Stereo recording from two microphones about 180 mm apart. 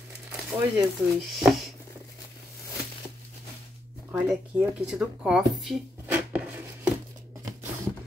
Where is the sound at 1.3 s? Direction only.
Centre (ahead or behind).